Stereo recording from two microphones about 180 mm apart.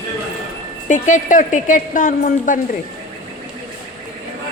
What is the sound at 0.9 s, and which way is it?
Speech, 45° left (ahead or behind).